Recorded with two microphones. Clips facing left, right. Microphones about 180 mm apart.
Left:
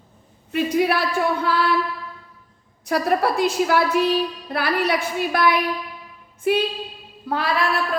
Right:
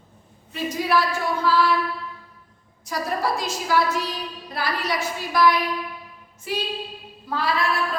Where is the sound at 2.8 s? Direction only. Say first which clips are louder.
Left 5 dB; 60° left (ahead or behind).